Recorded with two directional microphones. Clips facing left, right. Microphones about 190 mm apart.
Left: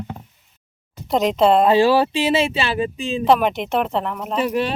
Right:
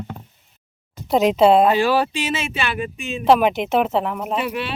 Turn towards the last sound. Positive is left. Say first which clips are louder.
# left 5 dB
turn(degrees=40)  # may be behind; listen again after turning